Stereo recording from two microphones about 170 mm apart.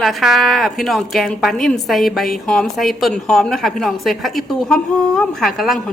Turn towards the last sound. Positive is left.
turn(degrees=0)  # may be behind; listen again after turning